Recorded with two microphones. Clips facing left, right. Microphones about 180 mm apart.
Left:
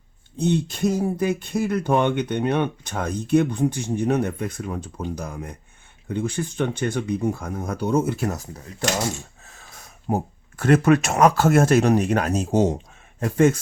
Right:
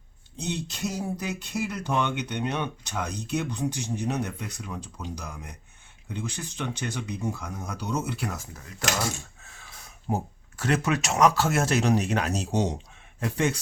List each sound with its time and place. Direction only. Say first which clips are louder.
0.3 s speech: left 10 dB; 55° left (ahead or behind); by 8.9 s 35° left (ahead or behind)
10.1 s speech: left 5 dB; 65° left (ahead or behind)
10.6 s speech: left 9 dB; 55° left (ahead or behind)